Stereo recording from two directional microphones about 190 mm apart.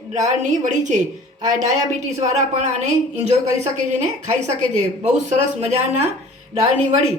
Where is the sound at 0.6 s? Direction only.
40° right (ahead or behind).